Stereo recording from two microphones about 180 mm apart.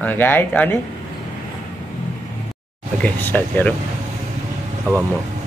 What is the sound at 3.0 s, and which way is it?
Speech, 10° left (ahead or behind).